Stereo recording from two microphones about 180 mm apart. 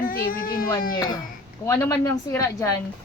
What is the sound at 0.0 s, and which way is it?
Baby cry, 50° left (ahead or behind).